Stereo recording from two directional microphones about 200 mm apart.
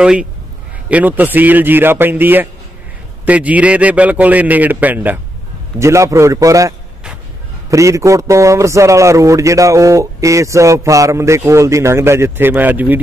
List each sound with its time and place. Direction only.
0.0 s a man's voice: 5° right (ahead or behind)
7.7 s a man's voice: 15° right (ahead or behind)